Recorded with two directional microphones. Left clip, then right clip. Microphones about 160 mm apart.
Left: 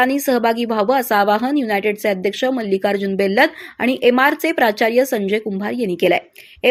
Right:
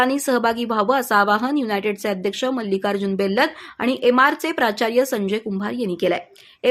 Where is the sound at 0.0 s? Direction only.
15° left (ahead or behind).